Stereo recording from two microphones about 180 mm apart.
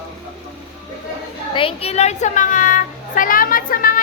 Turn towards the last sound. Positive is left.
turn(degrees=50)  # may be behind; listen again after turning